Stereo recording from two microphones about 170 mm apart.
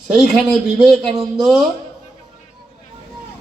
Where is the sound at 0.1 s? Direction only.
5° right (ahead or behind).